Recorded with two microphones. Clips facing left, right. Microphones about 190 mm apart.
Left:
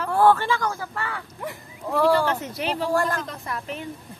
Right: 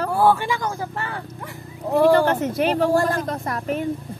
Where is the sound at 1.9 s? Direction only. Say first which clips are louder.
Right 4 dB; 50° right (ahead or behind).